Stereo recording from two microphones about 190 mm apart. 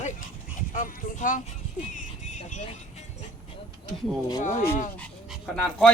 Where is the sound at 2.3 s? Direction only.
40° left (ahead or behind).